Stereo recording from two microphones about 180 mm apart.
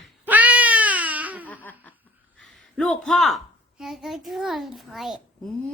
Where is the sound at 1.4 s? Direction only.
10° left (ahead or behind).